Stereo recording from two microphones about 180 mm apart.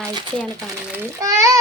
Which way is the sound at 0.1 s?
25° right (ahead or behind).